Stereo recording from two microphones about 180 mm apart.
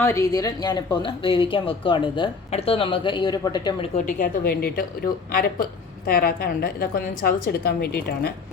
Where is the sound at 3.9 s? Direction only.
45° left (ahead or behind).